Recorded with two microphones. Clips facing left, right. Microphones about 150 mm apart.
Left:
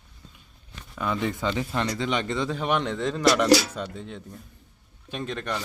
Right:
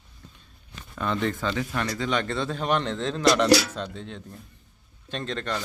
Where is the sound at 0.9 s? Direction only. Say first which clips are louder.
Right 1 dB; 10° left (ahead or behind).